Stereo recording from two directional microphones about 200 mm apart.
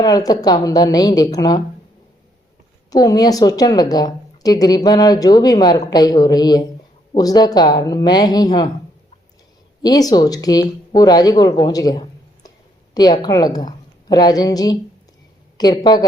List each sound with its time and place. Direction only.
0.0 s a woman's voice: 20° left (ahead or behind)
2.9 s a woman's voice: 20° left (ahead or behind)
9.8 s a woman's voice: 20° left (ahead or behind)